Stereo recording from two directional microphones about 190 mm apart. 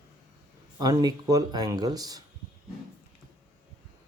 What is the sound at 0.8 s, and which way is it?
Speech, 20° right (ahead or behind).